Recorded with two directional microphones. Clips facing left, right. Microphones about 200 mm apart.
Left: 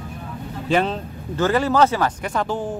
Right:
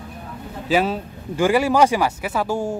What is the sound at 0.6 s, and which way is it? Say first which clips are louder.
Speech: right 1 dB; 5° right (ahead or behind).